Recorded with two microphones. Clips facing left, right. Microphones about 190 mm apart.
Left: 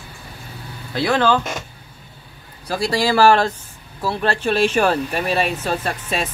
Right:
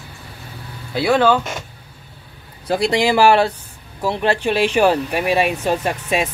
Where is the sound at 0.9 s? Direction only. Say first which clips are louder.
Right 2 dB; 10° right (ahead or behind).